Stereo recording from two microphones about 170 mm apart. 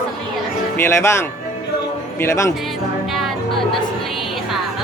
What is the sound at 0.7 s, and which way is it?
Speech, 15° left (ahead or behind).